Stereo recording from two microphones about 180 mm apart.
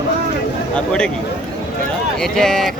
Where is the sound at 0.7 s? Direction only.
5° left (ahead or behind).